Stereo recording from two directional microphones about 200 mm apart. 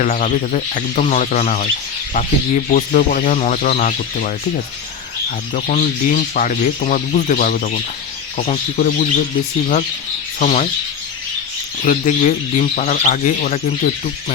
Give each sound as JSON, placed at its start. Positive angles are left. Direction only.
{"t": 0.0, "sound": "speech", "side_deg": 40}
{"t": 5.5, "sound": "speech", "side_deg": 40}
{"t": 10.4, "sound": "speech", "side_deg": 35}
{"t": 11.9, "sound": "speech", "side_deg": 40}